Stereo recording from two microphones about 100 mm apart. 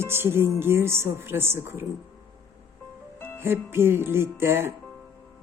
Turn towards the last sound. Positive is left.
turn(degrees=-25)  # may be behind; listen again after turning